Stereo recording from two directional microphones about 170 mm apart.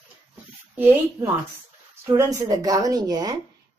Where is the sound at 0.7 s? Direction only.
15° right (ahead or behind).